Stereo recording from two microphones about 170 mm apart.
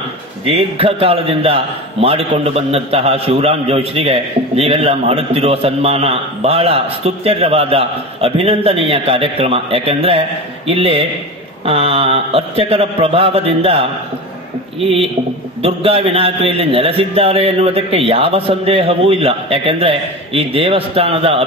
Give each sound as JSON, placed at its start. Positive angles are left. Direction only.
{"t": 0.5, "sound": "a man's voice", "side_deg": -30}
{"t": 15.6, "sound": "a man's voice", "side_deg": -35}